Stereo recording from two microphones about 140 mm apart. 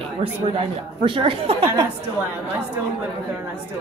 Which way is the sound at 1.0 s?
40° right (ahead or behind).